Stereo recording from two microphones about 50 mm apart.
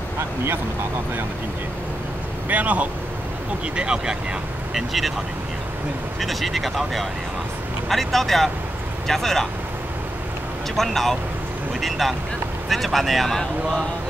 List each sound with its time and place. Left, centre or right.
2.5 s speech: right
3.7 s speech: centre
4.7 s speech: centre
6.2 s speech: centre
10.8 s speech: centre